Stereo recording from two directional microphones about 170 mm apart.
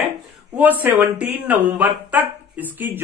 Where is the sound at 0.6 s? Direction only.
10° right (ahead or behind).